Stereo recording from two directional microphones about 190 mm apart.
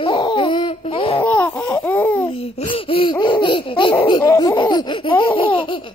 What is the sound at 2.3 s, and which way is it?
Laughter, 30° left (ahead or behind).